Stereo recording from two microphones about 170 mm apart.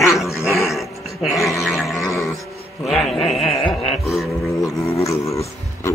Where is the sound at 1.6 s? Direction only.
Centre (ahead or behind).